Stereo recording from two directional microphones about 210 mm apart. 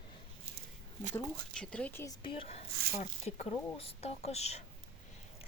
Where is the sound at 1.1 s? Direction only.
5° left (ahead or behind).